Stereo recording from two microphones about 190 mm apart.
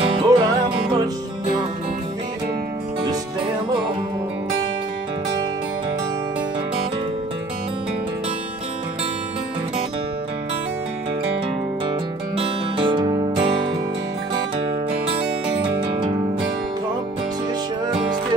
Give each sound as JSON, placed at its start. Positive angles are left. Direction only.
{"t": 0.1, "sound": "music", "side_deg": -25}
{"t": 12.4, "sound": "music", "side_deg": -25}
{"t": 15.6, "sound": "music", "side_deg": -25}